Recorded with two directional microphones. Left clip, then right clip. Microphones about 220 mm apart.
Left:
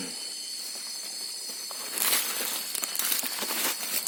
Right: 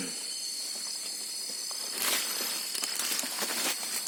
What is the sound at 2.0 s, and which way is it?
Crumpling, 45° left (ahead or behind).